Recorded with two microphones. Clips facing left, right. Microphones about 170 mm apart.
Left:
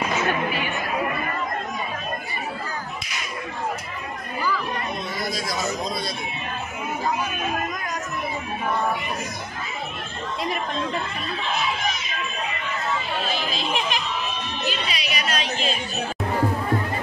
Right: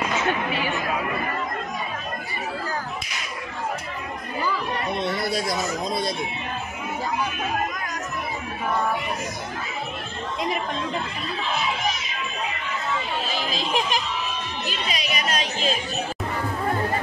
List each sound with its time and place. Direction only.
5.0 s speech: 65° right (ahead or behind); by 6.1 s 50° right (ahead or behind)
13.6 s a sound: 40° right (ahead or behind)
14.7 s speech: 45° right (ahead or behind)